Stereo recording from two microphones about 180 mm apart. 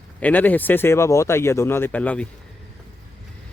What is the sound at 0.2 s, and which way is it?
Speech, 10° left (ahead or behind).